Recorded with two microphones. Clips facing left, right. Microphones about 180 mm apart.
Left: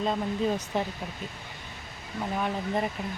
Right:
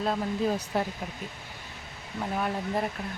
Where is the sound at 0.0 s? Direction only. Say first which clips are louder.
Even; 5° right (ahead or behind).